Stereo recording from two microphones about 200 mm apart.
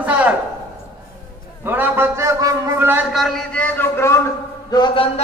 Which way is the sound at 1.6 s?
10° right (ahead or behind).